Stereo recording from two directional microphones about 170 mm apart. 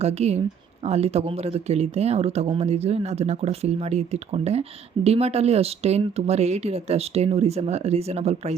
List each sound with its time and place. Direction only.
0.0 s speech: 40° right (ahead or behind)